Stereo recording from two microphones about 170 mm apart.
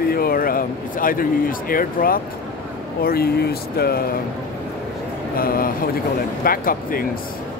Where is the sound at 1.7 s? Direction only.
55° left (ahead or behind).